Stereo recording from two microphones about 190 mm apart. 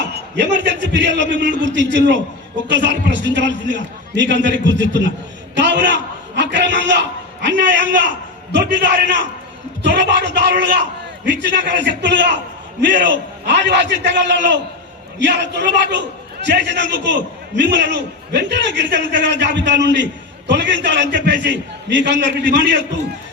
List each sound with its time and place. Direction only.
0.1 s a sound: 60° right (ahead or behind)
0.6 s a man's voice: 70° right (ahead or behind)
11.5 s a man's voice: 70° right (ahead or behind)
13.4 s a man's voice: 65° right (ahead or behind)